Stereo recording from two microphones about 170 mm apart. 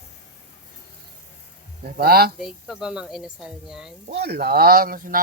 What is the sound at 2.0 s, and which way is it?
Speech, 65° right (ahead or behind).